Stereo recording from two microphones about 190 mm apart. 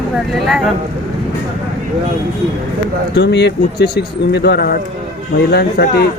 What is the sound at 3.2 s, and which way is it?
Speech, 60° left (ahead or behind).